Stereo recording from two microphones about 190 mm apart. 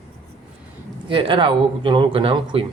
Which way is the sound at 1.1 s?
25° right (ahead or behind).